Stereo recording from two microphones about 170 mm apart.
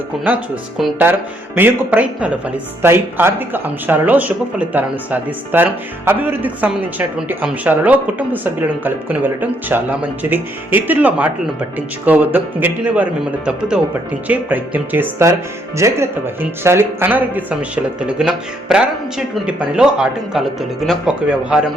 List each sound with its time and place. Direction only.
0.3 s speech: 10° right (ahead or behind)